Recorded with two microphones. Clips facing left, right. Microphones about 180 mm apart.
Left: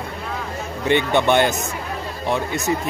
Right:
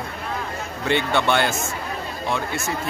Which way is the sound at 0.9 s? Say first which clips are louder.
Left 3 dB; 15° left (ahead or behind).